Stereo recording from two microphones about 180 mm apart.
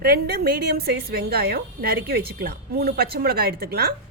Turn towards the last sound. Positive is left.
turn(degrees=-60)  # may be behind; listen again after turning